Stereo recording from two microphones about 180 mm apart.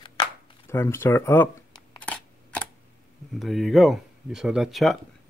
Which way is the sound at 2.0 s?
5° left (ahead or behind).